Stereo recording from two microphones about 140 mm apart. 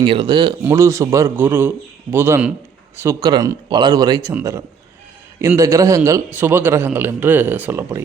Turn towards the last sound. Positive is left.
turn(degrees=-15)  # may be behind; listen again after turning